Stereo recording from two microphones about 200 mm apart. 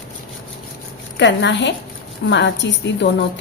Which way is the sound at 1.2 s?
60° left (ahead or behind).